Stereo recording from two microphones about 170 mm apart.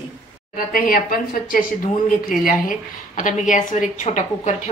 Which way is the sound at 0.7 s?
55° left (ahead or behind).